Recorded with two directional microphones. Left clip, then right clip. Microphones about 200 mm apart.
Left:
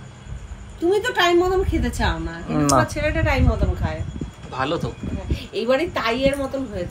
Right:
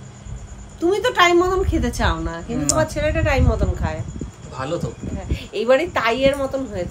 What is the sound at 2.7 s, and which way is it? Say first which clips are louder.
A man's voice: even; 5° right (ahead or behind).